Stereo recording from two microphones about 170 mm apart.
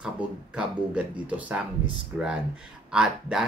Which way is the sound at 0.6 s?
5° right (ahead or behind).